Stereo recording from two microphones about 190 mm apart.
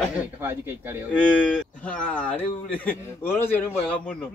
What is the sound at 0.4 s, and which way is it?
Speech, 10° right (ahead or behind).